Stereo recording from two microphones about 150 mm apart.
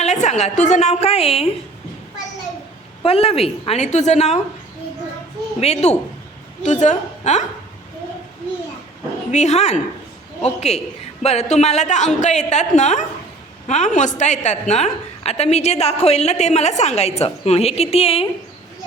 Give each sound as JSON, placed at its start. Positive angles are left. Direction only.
{"t": 0.0, "sound": "a woman's voice", "side_deg": 50}
{"t": 3.0, "sound": "a woman's voice", "side_deg": 40}
{"t": 5.5, "sound": "a woman's voice", "side_deg": 45}
{"t": 9.3, "sound": "a woman's voice", "side_deg": 50}